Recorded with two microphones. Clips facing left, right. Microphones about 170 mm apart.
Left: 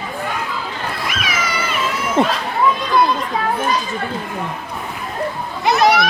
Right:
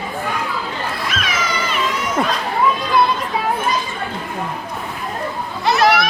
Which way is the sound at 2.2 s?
25° left (ahead or behind).